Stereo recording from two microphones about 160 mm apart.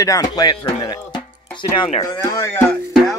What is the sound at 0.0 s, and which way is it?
Speech, 20° left (ahead or behind).